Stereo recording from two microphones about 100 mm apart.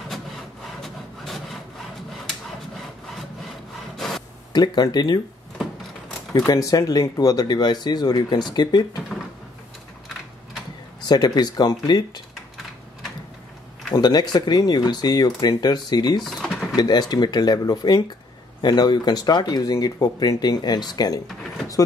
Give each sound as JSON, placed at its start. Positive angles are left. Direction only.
{"t": 0.7, "sound": "wood", "side_deg": 0}
{"t": 3.9, "sound": "a sound", "side_deg": 5}
{"t": 4.5, "sound": "speech", "side_deg": 45}
{"t": 6.3, "sound": "speech", "side_deg": 35}
{"t": 11.1, "sound": "speech", "side_deg": 45}
{"t": 13.9, "sound": "speech", "side_deg": 45}
{"t": 16.3, "sound": "drawer open or close", "side_deg": 0}
{"t": 16.7, "sound": "speech", "side_deg": 45}